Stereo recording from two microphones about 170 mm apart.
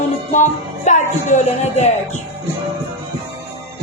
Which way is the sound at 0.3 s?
45° left (ahead or behind).